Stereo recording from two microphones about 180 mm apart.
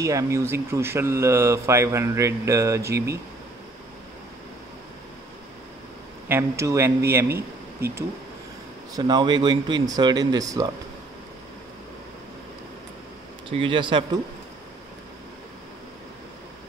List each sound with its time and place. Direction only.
0.0 s speech: 15° right (ahead or behind)
6.2 s speech: 15° right (ahead or behind)
13.5 s speech: 30° right (ahead or behind)